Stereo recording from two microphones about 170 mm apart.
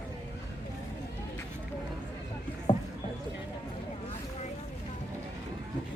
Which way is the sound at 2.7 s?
30° left (ahead or behind).